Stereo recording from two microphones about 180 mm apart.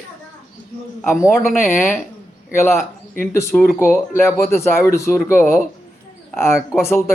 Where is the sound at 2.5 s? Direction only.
15° left (ahead or behind).